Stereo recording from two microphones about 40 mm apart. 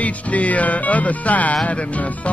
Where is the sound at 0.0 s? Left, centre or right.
Left.